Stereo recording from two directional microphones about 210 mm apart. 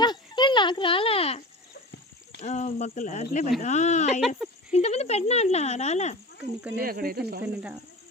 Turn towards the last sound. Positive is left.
turn(degrees=-5)  # may be behind; listen again after turning